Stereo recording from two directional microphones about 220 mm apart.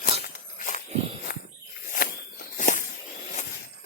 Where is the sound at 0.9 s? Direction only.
30° right (ahead or behind).